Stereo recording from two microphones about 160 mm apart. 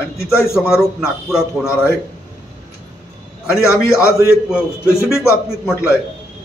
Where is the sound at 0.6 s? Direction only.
5° right (ahead or behind).